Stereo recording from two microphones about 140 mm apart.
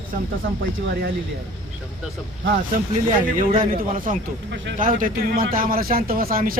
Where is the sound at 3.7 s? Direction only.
80° right.